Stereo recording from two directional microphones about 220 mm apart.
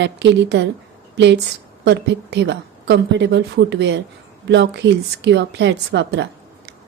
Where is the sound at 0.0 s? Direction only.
55° right (ahead or behind).